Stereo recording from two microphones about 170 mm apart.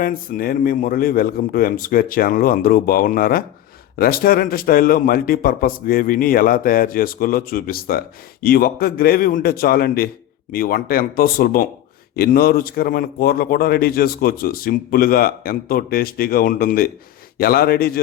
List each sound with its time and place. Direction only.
0.0 s speech: 55° left (ahead or behind)